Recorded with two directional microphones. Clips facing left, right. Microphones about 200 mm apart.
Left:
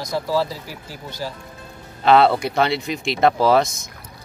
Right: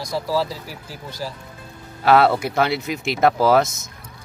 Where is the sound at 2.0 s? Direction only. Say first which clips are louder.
Left 1 dB; 5° right (ahead or behind).